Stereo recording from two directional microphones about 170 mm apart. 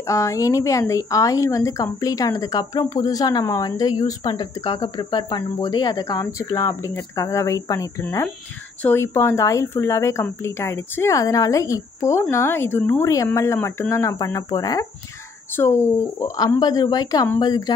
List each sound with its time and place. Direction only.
0.0 s a woman's voice: 20° left (ahead or behind)